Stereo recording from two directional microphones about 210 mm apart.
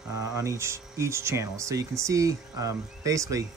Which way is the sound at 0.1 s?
15° right (ahead or behind).